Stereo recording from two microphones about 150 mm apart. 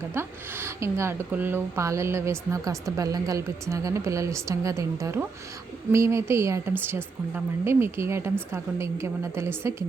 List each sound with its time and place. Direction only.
0.1 s a woman's voice: 15° right (ahead or behind)